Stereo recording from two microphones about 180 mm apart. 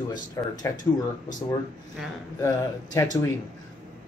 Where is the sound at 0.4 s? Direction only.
20° left (ahead or behind).